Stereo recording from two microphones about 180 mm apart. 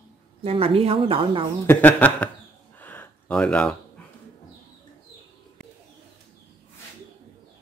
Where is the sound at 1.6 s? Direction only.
10° left (ahead or behind).